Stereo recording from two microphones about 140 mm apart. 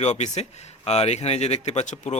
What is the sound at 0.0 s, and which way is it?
Speech, 55° left (ahead or behind).